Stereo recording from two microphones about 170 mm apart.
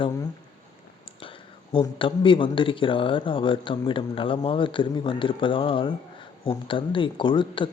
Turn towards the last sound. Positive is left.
turn(degrees=30)  # may be behind; listen again after turning